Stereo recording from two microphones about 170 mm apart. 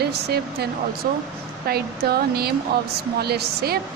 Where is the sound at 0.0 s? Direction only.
75° right (ahead or behind).